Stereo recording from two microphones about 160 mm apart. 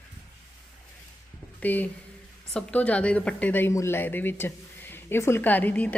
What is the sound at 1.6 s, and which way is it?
A woman's voice, 10° left (ahead or behind).